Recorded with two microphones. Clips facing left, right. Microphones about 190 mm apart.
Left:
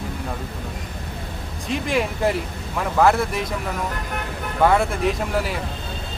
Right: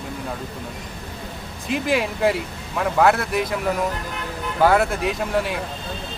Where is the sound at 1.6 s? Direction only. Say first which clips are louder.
Right 1 dB; centre (ahead or behind).